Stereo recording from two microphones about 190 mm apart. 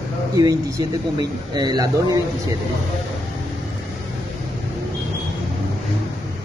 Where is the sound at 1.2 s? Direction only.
20° right (ahead or behind).